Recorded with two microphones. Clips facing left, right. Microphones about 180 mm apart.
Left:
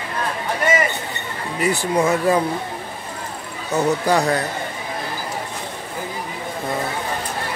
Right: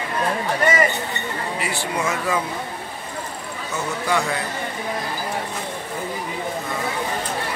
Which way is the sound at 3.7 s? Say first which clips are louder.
Left 6 dB; 35° left (ahead or behind).